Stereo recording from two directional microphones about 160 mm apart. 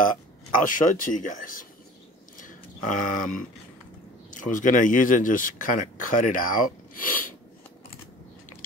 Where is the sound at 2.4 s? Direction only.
55° left (ahead or behind).